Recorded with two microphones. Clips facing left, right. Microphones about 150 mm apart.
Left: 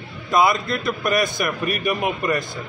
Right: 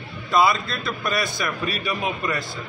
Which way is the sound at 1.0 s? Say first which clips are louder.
Left 4 dB; 50° left (ahead or behind).